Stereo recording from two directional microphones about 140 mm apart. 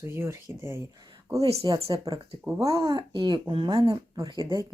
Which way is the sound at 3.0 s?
35° right (ahead or behind).